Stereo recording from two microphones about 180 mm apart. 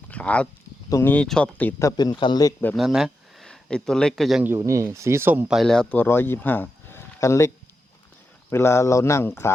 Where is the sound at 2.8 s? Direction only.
Centre (ahead or behind).